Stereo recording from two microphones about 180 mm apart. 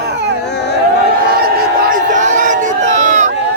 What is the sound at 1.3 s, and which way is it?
Crowd, 55° right (ahead or behind).